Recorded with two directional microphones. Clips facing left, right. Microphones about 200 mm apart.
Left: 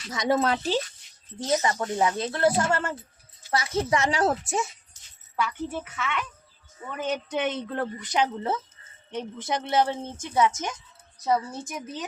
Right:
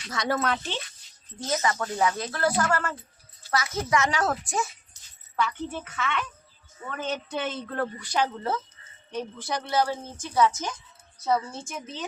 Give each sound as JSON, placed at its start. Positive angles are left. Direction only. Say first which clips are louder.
{"t": 0.1, "sound": "speech", "louder": "left 3 dB", "side_deg": 20}
{"t": 1.7, "sound": "a woman's voice", "louder": "left 1 dB", "side_deg": 25}
{"t": 5.4, "sound": "a woman's voice", "louder": "even", "side_deg": 10}